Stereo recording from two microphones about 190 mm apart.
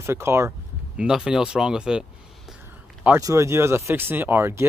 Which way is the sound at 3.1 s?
15° right (ahead or behind).